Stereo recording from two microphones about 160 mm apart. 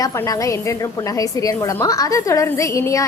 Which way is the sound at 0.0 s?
20° left (ahead or behind).